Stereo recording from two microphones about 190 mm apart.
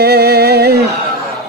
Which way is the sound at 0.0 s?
60° right (ahead or behind).